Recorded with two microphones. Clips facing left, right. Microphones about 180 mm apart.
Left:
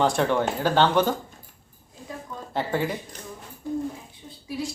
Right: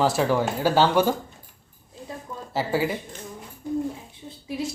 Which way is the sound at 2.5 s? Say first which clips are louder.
Right 2 dB; 5° right (ahead or behind).